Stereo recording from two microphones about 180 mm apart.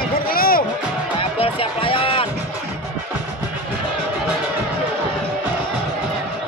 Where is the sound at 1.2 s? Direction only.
30° left (ahead or behind).